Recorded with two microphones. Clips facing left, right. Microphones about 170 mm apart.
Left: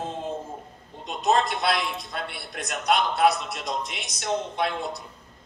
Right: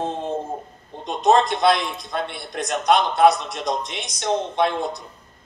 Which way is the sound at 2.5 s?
35° right (ahead or behind).